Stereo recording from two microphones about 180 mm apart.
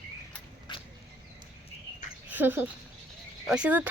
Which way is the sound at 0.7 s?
25° left (ahead or behind).